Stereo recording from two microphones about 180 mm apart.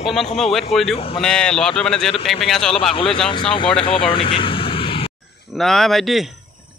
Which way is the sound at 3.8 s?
30° left (ahead or behind).